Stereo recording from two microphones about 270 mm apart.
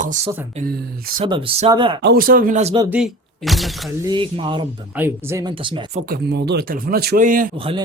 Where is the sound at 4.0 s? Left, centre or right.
Centre.